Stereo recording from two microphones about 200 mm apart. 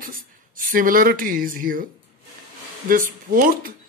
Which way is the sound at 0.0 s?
45° right (ahead or behind).